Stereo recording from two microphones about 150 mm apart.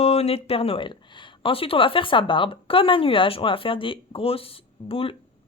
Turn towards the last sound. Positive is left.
turn(degrees=40)  # may be behind; listen again after turning